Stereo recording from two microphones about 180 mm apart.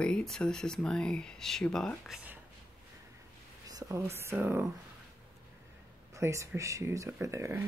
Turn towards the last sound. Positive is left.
turn(degrees=-15)  # may be behind; listen again after turning